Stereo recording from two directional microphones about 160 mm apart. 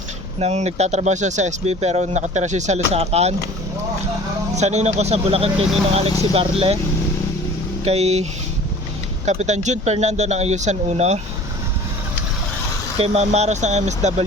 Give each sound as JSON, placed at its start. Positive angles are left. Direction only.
{"t": 0.3, "sound": "speech", "side_deg": -40}
{"t": 4.5, "sound": "speech", "side_deg": -45}
{"t": 7.9, "sound": "speech", "side_deg": -40}
{"t": 13.0, "sound": "speech", "side_deg": -40}